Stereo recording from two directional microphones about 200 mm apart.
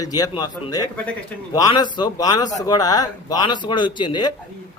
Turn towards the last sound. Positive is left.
turn(degrees=20)  # may be behind; listen again after turning